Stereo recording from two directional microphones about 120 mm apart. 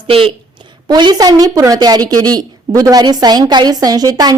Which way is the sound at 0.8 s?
40° right (ahead or behind).